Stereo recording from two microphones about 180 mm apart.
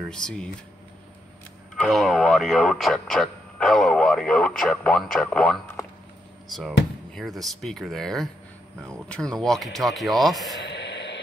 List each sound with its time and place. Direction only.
0.1 s speech: 5° left (ahead or behind)
1.8 s speech: centre (ahead or behind)
10.6 s a sound: 75° left (ahead or behind)